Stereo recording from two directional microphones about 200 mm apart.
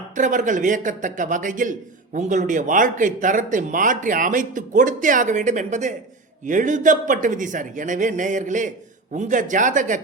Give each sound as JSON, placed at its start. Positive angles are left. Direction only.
{"t": 0.2, "sound": "speech", "side_deg": -40}